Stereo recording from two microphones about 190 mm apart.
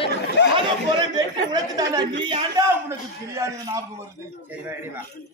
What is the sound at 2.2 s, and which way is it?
A man's voice, 20° right (ahead or behind).